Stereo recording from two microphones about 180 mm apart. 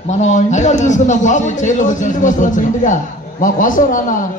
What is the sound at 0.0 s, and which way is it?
A man's voice, 40° left (ahead or behind).